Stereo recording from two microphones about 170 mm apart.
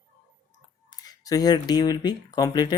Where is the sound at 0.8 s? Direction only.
20° left (ahead or behind).